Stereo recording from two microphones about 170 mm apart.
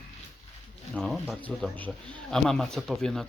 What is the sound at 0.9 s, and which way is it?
Speech, centre (ahead or behind).